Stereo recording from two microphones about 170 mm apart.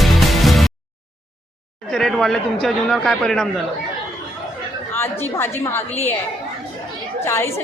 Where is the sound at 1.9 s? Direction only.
Centre (ahead or behind).